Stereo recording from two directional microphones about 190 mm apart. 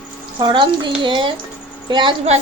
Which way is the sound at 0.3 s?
25° right (ahead or behind).